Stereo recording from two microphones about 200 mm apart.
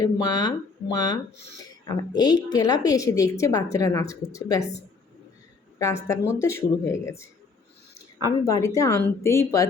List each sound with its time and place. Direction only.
0.0 s a woman's voice: 20° left (ahead or behind)
5.8 s a woman's voice: 15° left (ahead or behind)
8.4 s a woman's voice: 15° left (ahead or behind)